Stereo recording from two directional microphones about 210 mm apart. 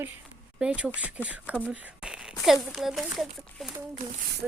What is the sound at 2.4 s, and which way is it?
Speech, centre (ahead or behind).